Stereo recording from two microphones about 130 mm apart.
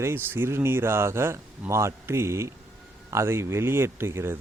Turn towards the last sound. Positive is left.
turn(degrees=-20)  # may be behind; listen again after turning